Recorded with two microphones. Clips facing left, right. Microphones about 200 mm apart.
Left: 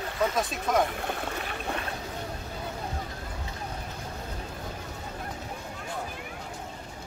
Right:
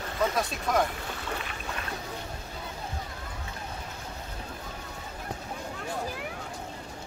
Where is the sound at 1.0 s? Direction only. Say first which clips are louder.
Left 5 dB; 55° left (ahead or behind).